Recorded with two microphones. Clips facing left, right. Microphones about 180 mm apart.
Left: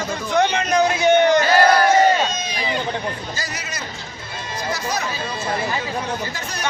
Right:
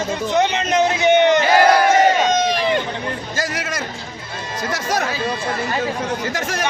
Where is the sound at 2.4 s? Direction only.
80° right.